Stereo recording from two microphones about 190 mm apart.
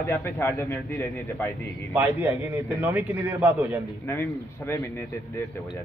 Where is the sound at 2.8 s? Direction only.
10° right (ahead or behind).